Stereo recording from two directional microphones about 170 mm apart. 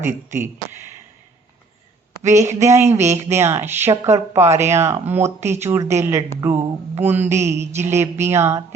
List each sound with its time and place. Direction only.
0.3 s speech: 15° right (ahead or behind)
2.3 s speech: 15° right (ahead or behind)